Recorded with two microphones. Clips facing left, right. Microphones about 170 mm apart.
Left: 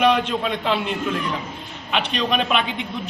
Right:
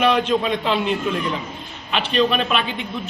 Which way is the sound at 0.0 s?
10° left (ahead or behind).